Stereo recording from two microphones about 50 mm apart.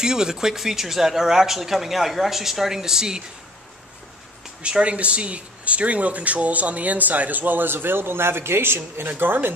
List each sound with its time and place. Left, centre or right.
0.0 s speech: centre
4.6 s speech: right